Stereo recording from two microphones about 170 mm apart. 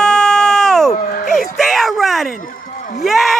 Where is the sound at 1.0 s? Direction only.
60° left (ahead or behind).